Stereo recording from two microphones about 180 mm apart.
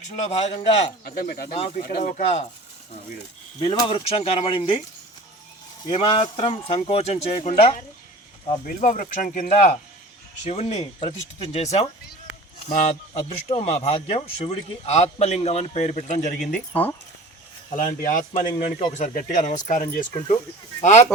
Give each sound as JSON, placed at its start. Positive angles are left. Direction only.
{"t": 0.3, "sound": "speech", "side_deg": 35}
{"t": 1.0, "sound": "speech", "side_deg": 50}
{"t": 1.5, "sound": "speech", "side_deg": 35}
{"t": 1.8, "sound": "speech", "side_deg": 50}
{"t": 3.6, "sound": "speech", "side_deg": 25}
{"t": 5.9, "sound": "speech", "side_deg": 30}
{"t": 8.6, "sound": "speech", "side_deg": 45}
{"t": 17.7, "sound": "speech", "side_deg": 40}